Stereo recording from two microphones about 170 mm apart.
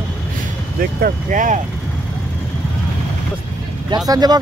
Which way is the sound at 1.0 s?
50° right (ahead or behind).